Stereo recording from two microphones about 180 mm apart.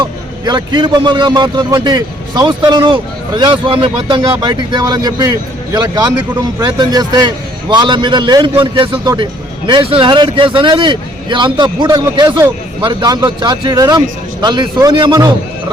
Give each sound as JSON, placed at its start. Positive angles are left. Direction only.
{"t": 0.0, "sound": "a man's voice", "side_deg": -25}